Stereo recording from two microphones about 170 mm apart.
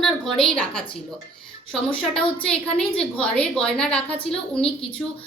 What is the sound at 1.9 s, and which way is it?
A woman's voice, 5° left (ahead or behind).